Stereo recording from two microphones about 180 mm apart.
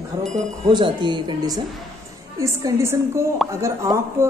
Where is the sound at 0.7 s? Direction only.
25° right (ahead or behind).